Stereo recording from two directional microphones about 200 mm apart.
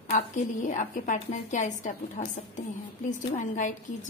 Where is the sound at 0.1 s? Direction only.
40° left (ahead or behind).